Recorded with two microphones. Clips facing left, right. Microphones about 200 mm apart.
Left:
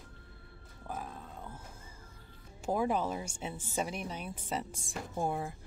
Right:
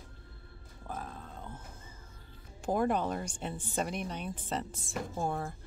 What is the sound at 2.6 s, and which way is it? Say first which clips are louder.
Speech: right 1 dB; 5° left (ahead or behind).